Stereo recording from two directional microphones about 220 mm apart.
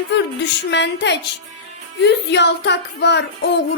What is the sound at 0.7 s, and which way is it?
Child singing, 50° left (ahead or behind).